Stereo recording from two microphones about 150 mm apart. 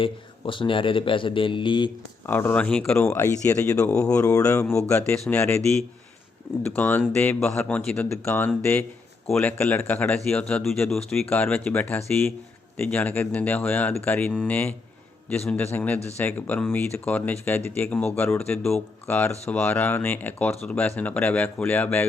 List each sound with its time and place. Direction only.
0.0 s speech: 35° left (ahead or behind)
2.2 s speech: 15° left (ahead or behind)
3.1 s speech: 20° left (ahead or behind)
3.8 s speech: 5° left (ahead or behind)
4.2 s speech: 20° left (ahead or behind)
6.7 s speech: 10° left (ahead or behind)
17.8 s speech: 5° left (ahead or behind)
18.2 s speech: 15° left (ahead or behind)
18.5 s speech: 5° left (ahead or behind)